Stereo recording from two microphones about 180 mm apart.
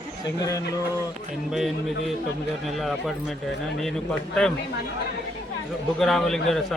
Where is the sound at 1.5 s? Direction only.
Centre (ahead or behind).